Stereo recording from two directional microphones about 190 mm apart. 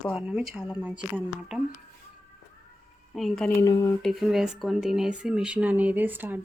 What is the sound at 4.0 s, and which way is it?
Speech, centre (ahead or behind).